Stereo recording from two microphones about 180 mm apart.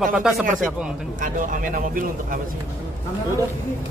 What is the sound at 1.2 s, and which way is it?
Speech, 45° right (ahead or behind).